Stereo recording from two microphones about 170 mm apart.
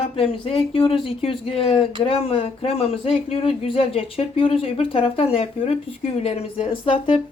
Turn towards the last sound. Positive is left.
turn(degrees=30)  # may be behind; listen again after turning